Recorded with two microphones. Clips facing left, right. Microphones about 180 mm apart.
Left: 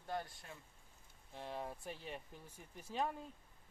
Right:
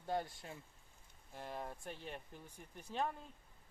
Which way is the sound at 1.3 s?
Centre (ahead or behind).